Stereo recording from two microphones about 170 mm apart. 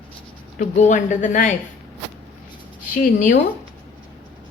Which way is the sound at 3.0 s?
55° left (ahead or behind).